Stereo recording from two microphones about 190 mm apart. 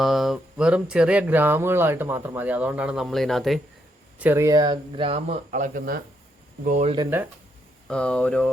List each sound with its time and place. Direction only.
0.0 s speech: centre (ahead or behind)
4.2 s speech: 15° right (ahead or behind); by 6.9 s 40° right (ahead or behind)
7.1 s speech: 10° right (ahead or behind)
7.9 s speech: 5° left (ahead or behind)